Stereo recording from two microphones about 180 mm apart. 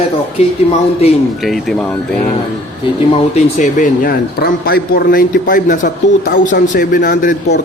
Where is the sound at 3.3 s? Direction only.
45° left (ahead or behind).